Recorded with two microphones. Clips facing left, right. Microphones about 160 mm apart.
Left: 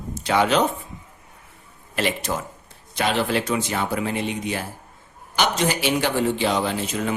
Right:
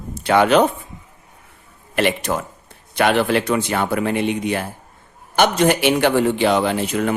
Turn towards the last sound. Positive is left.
turn(degrees=-60)  # may be behind; listen again after turning